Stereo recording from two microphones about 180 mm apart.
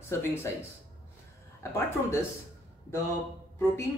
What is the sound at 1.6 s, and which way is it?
Speech, 15° left (ahead or behind).